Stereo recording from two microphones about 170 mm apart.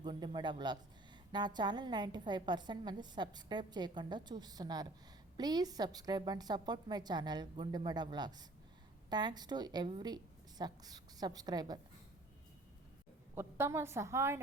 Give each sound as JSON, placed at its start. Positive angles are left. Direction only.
{"t": 0.0, "sound": "a woman's voice", "side_deg": -25}
{"t": 13.3, "sound": "a woman's voice", "side_deg": -15}